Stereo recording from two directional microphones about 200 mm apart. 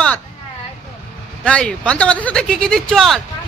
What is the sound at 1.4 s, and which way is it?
Speech, 5° left (ahead or behind).